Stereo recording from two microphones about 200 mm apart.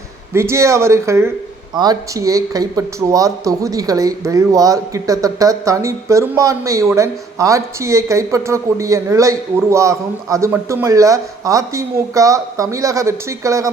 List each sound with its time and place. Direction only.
0.3 s speech: 15° right (ahead or behind)